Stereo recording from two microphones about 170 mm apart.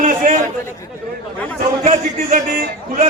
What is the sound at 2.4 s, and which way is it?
Speech, 55° right (ahead or behind).